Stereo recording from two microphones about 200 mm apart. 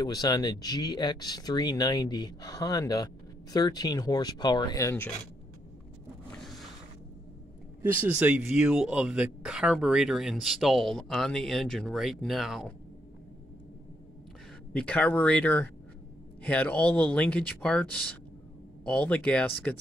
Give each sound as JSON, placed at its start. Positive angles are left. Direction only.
{"t": 0.0, "sound": "speech", "side_deg": 20}
{"t": 6.3, "sound": "vehicle", "side_deg": 0}
{"t": 7.8, "sound": "speech", "side_deg": -10}
{"t": 14.7, "sound": "speech", "side_deg": 5}
{"t": 18.9, "sound": "speech", "side_deg": 5}